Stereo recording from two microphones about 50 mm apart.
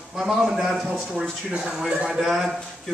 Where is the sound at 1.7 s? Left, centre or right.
Centre.